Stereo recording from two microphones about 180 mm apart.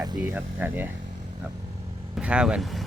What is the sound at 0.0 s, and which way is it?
Speech, 20° right (ahead or behind).